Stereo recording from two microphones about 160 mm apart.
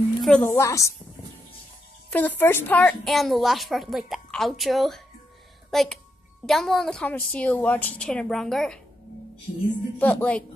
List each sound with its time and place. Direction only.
0.2 s a woman's voice: 5° left (ahead or behind)
0.6 s a woman's voice: 20° left (ahead or behind)
2.0 s a woman's voice: 10° left (ahead or behind)
9.9 s speech: 10° left (ahead or behind)